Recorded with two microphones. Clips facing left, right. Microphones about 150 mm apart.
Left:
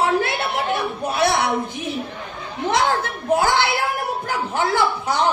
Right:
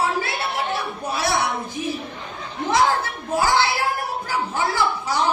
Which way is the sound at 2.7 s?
60° left (ahead or behind).